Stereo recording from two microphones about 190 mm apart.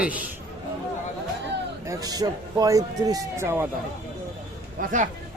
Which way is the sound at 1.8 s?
20° right (ahead or behind).